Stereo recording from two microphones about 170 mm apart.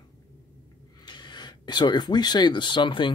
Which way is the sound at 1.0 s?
25° left (ahead or behind).